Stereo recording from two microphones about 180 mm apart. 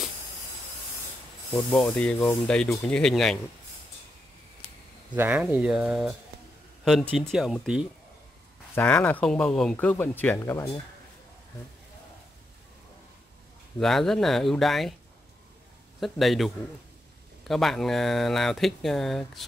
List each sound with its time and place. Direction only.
1.7 s speech: 15° left (ahead or behind)
2.0 s speech: 5° left (ahead or behind)
5.1 s speech: 10° right (ahead or behind)
8.7 s speech: 10° left (ahead or behind)
13.7 s speech: centre (ahead or behind)
16.0 s speech: centre (ahead or behind)